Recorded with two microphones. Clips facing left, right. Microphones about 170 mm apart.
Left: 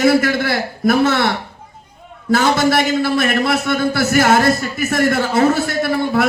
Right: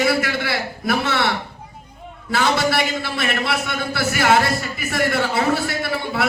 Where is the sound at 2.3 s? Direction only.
45° left (ahead or behind).